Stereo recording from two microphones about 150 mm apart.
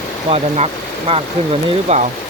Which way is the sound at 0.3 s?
45° right (ahead or behind).